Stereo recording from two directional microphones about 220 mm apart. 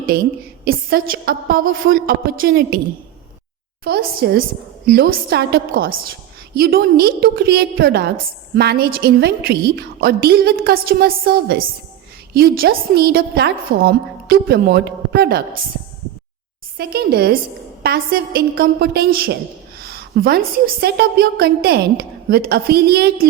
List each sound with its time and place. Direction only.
0.6 s a woman's voice: 40° right (ahead or behind)
3.8 s a woman's voice: 45° right (ahead or behind)
16.7 s a woman's voice: 45° right (ahead or behind)